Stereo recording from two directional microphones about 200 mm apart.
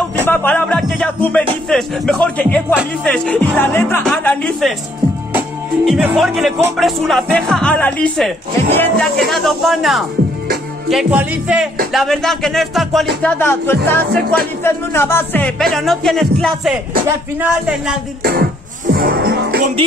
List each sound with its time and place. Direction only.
0.3 s music: 10° left (ahead or behind)
1.7 s speech: 5° left (ahead or behind)
5.9 s speech: centre (ahead or behind)
13.2 s music: 10° left (ahead or behind)
14.2 s speech: 50° right (ahead or behind)
14.6 s speech: 10° left (ahead or behind); by 17.9 s 5° right (ahead or behind)
18.2 s speech: 50° right (ahead or behind)
18.9 s music: 50° right (ahead or behind)